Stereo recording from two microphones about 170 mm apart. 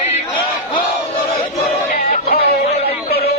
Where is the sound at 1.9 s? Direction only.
55° left (ahead or behind).